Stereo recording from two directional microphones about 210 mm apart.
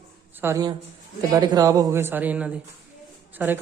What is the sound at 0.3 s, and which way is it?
Speech, 15° right (ahead or behind).